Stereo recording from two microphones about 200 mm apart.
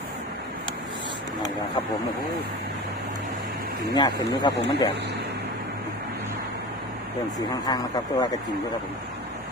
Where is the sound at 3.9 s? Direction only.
20° left (ahead or behind).